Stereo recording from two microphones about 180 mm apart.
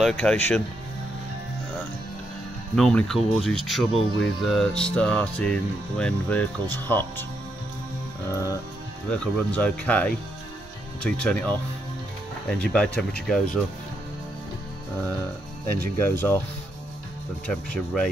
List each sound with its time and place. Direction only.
0.0 s music: 5° left (ahead or behind)
2.7 s music: 5° left (ahead or behind)
8.3 s speech: 15° left (ahead or behind)
11.0 s music: 5° left (ahead or behind)
16.0 s speech: 15° left (ahead or behind)
17.5 s music: 5° left (ahead or behind)